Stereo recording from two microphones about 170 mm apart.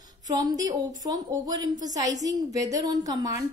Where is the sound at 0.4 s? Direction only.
20° right (ahead or behind).